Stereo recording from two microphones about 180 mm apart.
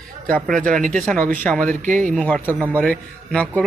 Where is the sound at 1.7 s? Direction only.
45° right (ahead or behind).